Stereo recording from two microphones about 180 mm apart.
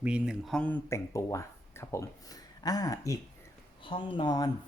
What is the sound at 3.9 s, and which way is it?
Speech, 30° left (ahead or behind).